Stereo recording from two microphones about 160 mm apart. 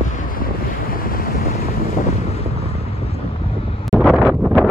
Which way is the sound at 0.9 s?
60° left (ahead or behind).